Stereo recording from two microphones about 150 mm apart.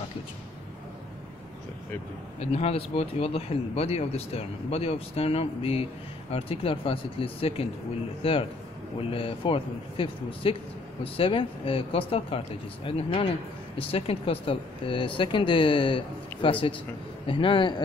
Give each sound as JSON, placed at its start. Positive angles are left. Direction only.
{"t": 2.4, "sound": "speech", "side_deg": 45}